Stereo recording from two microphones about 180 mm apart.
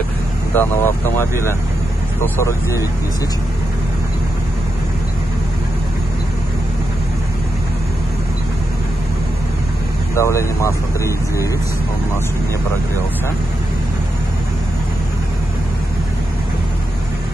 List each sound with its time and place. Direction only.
0.6 s speech: 15° left (ahead or behind)
10.1 s speech: 15° left (ahead or behind)